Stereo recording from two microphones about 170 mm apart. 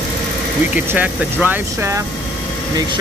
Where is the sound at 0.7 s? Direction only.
10° right (ahead or behind).